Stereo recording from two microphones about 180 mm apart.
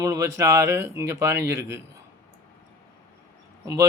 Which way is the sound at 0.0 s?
15° right (ahead or behind).